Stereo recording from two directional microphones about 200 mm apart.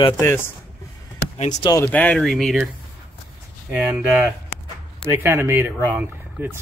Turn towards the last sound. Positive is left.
turn(degrees=-10)  # may be behind; listen again after turning